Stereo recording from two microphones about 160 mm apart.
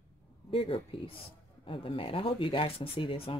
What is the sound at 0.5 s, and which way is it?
Speech, 35° left (ahead or behind).